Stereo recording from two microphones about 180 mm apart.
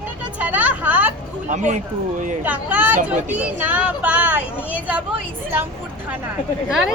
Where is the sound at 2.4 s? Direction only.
10° right (ahead or behind).